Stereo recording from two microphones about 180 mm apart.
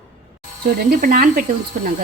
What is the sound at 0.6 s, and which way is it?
Speech, 55° right (ahead or behind).